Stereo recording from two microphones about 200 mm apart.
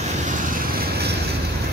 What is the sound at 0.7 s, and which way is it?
Vehicle, 50° right (ahead or behind).